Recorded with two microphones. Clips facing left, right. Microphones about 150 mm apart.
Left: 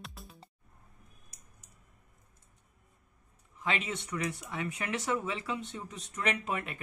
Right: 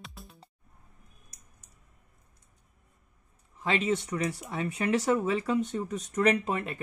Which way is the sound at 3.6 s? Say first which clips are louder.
Right 7 dB; 35° right (ahead or behind).